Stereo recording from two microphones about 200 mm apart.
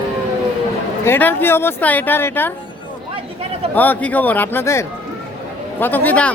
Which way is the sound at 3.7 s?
10° left (ahead or behind).